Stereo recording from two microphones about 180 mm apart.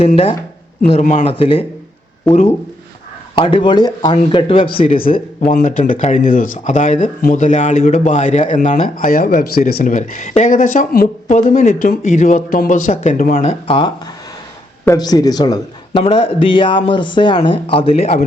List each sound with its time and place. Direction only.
0.8 s speech: 40° left (ahead or behind)
2.3 s speech: 10° left (ahead or behind)
3.3 s a man's voice: 25° left (ahead or behind)
5.6 s speech: 45° left (ahead or behind)
6.2 s speech: 50° left (ahead or behind)
13.5 s a man's voice: 30° left (ahead or behind)